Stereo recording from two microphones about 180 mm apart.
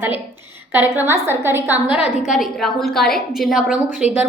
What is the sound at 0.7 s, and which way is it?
A woman's voice, 10° right (ahead or behind).